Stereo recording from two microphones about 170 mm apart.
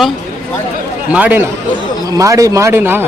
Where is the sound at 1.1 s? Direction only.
10° right (ahead or behind).